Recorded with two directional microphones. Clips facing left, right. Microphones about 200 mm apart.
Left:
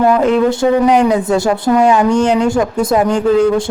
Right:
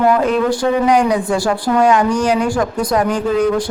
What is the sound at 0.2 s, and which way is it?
Speech, 25° left (ahead or behind).